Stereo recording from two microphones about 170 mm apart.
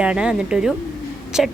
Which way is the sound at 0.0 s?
5° right (ahead or behind).